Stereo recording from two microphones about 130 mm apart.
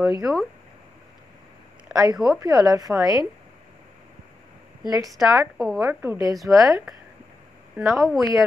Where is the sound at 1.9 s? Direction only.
25° right (ahead or behind).